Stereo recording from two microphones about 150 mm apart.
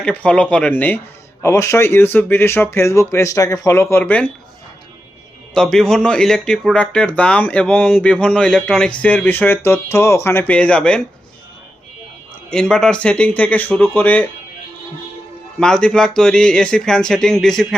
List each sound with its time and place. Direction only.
0.0 s speech: 10° left (ahead or behind)
5.5 s speech: 5° left (ahead or behind)
12.5 s speech: 5° left (ahead or behind)
15.5 s speech: 5° left (ahead or behind)